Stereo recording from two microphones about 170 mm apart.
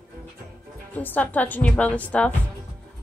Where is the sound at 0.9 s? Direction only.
10° left (ahead or behind).